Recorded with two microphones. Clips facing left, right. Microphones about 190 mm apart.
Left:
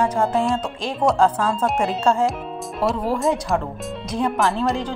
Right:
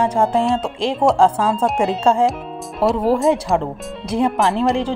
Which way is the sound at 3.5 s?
25° right (ahead or behind).